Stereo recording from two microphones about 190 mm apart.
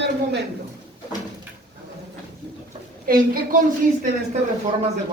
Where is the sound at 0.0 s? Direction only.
60° right (ahead or behind).